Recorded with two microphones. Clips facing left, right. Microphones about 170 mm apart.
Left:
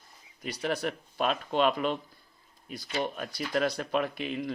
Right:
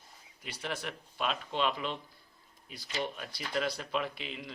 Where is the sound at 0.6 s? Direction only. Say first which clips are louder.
Left 8 dB; 40° left (ahead or behind).